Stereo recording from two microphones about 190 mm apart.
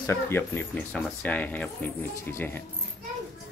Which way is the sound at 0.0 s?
15° left (ahead or behind).